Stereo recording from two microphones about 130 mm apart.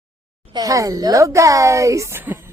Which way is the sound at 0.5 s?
25° right (ahead or behind).